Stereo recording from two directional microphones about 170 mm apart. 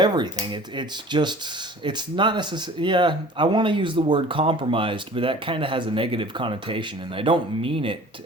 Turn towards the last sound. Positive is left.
turn(degrees=-30)  # may be behind; listen again after turning